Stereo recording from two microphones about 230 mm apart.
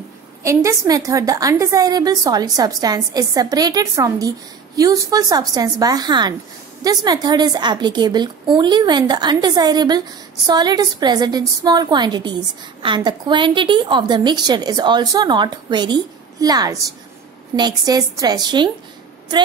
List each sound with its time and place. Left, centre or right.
0.4 s a woman's voice: centre